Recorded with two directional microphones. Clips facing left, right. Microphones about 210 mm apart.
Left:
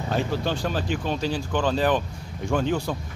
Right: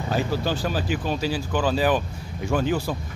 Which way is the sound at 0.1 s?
5° right (ahead or behind).